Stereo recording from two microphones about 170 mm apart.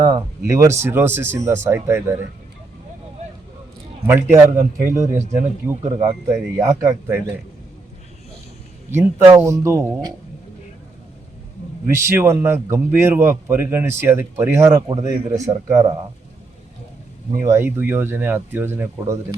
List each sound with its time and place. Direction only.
0.0 s a man's voice: 20° right (ahead or behind)
4.0 s a man's voice: 15° right (ahead or behind)
8.9 s a man's voice: 15° right (ahead or behind)
11.9 s a man's voice: 15° right (ahead or behind)
17.4 s a man's voice: 15° right (ahead or behind)